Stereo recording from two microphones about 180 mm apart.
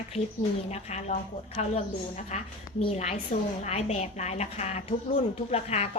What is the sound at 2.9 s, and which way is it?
Speech, 40° left (ahead or behind).